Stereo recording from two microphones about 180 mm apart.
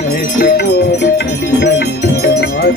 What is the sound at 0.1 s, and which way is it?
Music, 60° left (ahead or behind).